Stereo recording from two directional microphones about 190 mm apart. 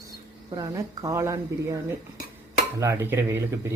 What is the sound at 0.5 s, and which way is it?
Speech, 20° right (ahead or behind).